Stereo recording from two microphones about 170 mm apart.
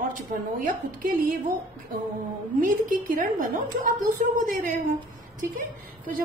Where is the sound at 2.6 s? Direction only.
50° right (ahead or behind).